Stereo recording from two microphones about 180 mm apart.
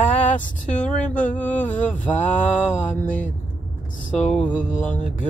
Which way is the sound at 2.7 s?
45° left (ahead or behind).